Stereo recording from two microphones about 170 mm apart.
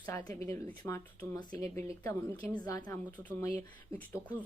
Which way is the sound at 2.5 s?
25° left (ahead or behind).